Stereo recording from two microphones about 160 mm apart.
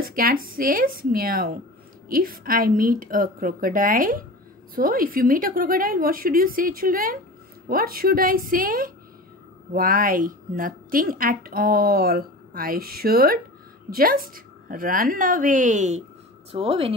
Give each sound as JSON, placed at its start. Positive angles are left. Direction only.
{"t": 0.0, "sound": "a woman's voice", "side_deg": -65}
{"t": 16.5, "sound": "speech", "side_deg": -35}